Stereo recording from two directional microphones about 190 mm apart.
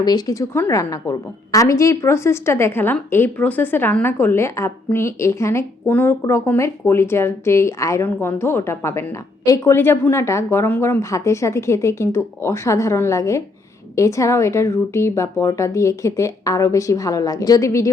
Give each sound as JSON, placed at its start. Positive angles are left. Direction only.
{"t": 0.0, "sound": "a woman's voice", "side_deg": 20}